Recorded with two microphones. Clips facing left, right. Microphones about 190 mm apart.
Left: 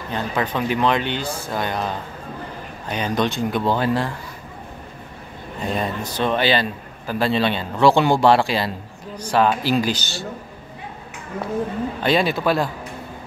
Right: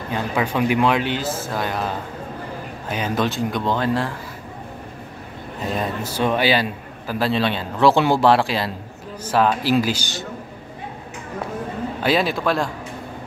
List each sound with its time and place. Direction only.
0.1 s a man's voice: 10° right (ahead or behind)
2.9 s a man's voice: 5° right (ahead or behind)
5.6 s a man's voice: centre (ahead or behind)
12.0 s a man's voice: centre (ahead or behind)